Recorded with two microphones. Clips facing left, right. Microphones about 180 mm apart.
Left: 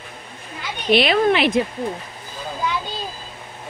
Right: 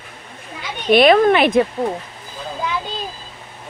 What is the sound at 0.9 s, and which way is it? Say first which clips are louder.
Speech: right 5 dB; 50° right (ahead or behind).